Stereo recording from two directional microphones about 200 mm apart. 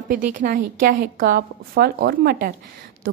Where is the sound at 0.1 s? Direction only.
45° right (ahead or behind).